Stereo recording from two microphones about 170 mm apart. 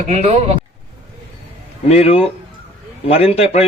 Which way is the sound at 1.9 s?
35° left (ahead or behind).